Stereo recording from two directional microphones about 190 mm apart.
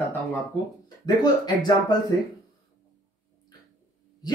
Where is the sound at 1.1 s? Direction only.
20° left (ahead or behind).